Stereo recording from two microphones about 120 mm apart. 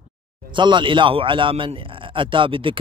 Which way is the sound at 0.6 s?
40° right (ahead or behind).